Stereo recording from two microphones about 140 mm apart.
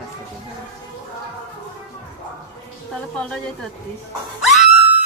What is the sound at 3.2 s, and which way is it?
Speech, 5° left (ahead or behind).